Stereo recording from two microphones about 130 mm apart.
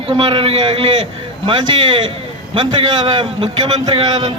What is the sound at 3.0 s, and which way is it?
Speech, 35° right (ahead or behind).